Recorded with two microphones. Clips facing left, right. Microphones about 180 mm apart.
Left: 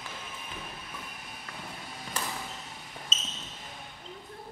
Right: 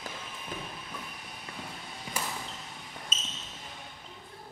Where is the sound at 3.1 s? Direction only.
10° right (ahead or behind).